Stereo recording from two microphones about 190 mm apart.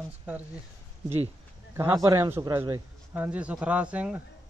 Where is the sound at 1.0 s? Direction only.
35° right (ahead or behind).